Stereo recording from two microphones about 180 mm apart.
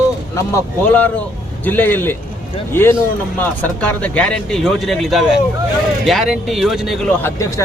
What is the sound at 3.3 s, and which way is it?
Speech, 10° left (ahead or behind).